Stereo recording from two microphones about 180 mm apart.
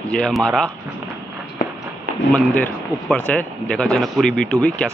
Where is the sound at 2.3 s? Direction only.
10° left (ahead or behind).